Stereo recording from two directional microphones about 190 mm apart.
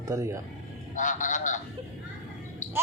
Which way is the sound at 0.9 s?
40° left (ahead or behind).